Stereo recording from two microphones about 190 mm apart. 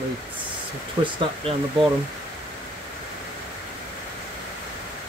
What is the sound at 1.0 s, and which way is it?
Speech, 25° right (ahead or behind).